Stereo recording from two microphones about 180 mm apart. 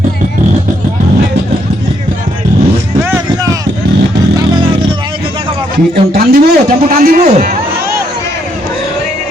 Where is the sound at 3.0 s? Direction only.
15° right (ahead or behind).